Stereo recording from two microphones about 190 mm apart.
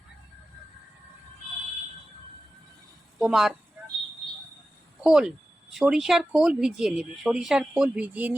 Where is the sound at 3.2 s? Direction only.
Centre (ahead or behind).